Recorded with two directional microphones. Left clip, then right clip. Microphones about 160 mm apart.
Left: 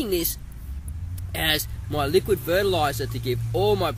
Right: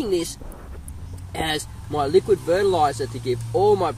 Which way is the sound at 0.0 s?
Centre (ahead or behind).